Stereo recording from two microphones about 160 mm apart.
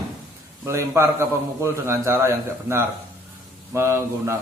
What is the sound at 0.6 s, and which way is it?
A man's voice, 20° right (ahead or behind).